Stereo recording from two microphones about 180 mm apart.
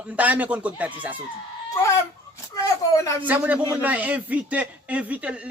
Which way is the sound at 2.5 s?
20° left (ahead or behind).